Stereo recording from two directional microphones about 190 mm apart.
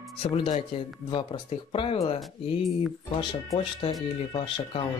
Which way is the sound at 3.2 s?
25° left (ahead or behind).